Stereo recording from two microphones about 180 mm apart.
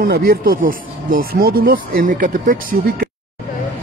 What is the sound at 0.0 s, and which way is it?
Speech, 55° right (ahead or behind).